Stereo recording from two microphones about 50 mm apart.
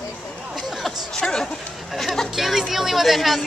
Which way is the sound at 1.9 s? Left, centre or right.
Centre.